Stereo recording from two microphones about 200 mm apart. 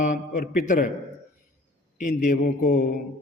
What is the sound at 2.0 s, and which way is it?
Speech, 40° left (ahead or behind).